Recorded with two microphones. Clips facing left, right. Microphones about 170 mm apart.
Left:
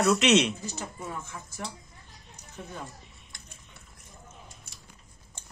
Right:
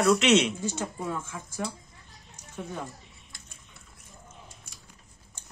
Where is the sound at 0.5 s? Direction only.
90° right.